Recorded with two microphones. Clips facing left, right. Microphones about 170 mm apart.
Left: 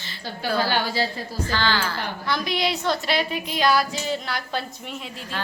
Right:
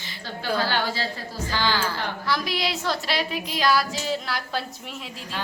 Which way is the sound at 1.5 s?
15° right (ahead or behind).